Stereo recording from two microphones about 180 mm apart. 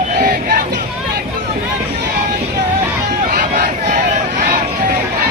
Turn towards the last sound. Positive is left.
turn(degrees=-55)  # may be behind; listen again after turning